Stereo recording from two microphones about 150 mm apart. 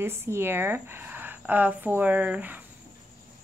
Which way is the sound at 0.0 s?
15° right (ahead or behind).